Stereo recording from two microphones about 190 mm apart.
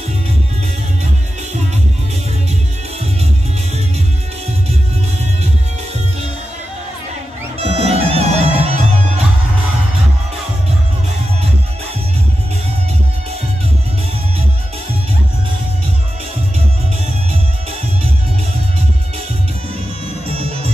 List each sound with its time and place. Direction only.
7.6 s music: 30° right (ahead or behind)
20.2 s music: 30° right (ahead or behind)